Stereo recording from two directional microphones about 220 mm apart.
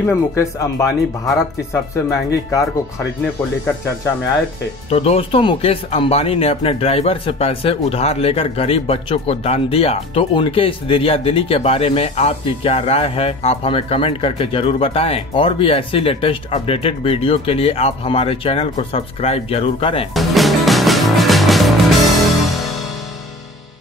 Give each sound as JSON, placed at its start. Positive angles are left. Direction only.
{"t": 0.0, "sound": "speech", "side_deg": 15}
{"t": 4.8, "sound": "speech", "side_deg": 25}
{"t": 20.2, "sound": "music", "side_deg": 0}